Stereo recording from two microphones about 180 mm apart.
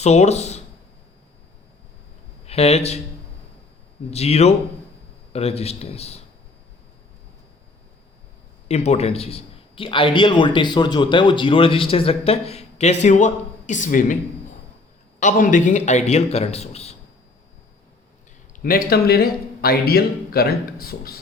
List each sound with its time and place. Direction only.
0.0 s speech: 35° left (ahead or behind)
2.5 s a man's voice: 35° left (ahead or behind)
4.1 s a man's voice: 35° left (ahead or behind)
8.6 s a man's voice: 35° left (ahead or behind)
15.2 s a man's voice: 45° left (ahead or behind)
18.6 s speech: 55° left (ahead or behind)